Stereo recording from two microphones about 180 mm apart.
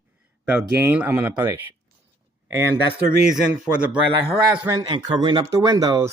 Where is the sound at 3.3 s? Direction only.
5° right (ahead or behind).